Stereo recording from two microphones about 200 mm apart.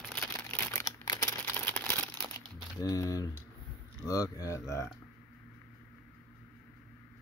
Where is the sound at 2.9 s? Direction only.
15° left (ahead or behind).